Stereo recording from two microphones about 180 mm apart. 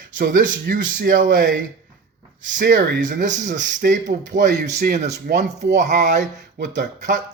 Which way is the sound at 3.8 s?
60° right (ahead or behind).